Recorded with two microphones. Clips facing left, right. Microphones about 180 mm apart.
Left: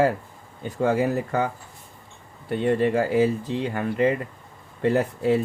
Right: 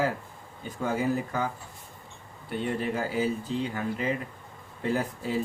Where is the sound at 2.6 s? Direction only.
65° left (ahead or behind).